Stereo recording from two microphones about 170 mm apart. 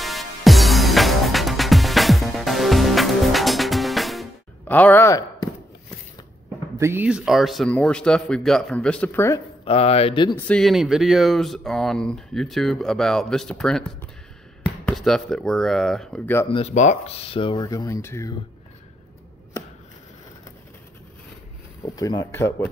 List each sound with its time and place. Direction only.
0.0 s music: centre (ahead or behind)
4.6 s speech: 10° left (ahead or behind)
6.8 s speech: 10° right (ahead or behind); by 9.4 s 15° left (ahead or behind)
9.7 s speech: 35° left (ahead or behind)
10.3 s speech: 5° left (ahead or behind)
16.4 s speech: 35° left (ahead or behind); by 18.3 s 20° left (ahead or behind)
21.8 s speech: 20° left (ahead or behind)